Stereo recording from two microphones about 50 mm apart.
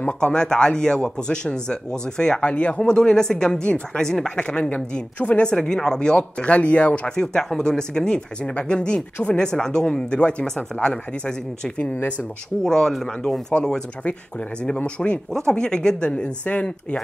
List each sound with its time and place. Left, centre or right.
0.2 s speech: centre
7.2 s speech: centre
11.9 s speech: left
12.6 s speech: centre
15.0 s speech: centre